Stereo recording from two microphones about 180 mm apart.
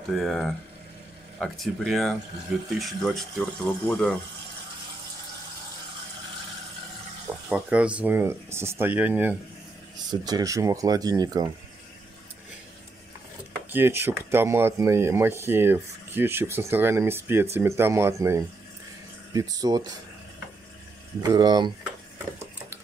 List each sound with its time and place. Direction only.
0.1 s speech: centre (ahead or behind)
7.4 s speech: 5° right (ahead or behind)
10.0 s speech: 20° right (ahead or behind)
13.7 s speech: 10° right (ahead or behind)
21.2 s speech: 20° right (ahead or behind)